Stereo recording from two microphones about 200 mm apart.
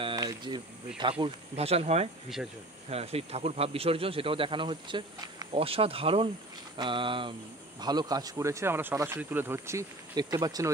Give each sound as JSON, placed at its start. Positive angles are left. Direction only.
{"t": 0.0, "sound": "speech", "side_deg": -15}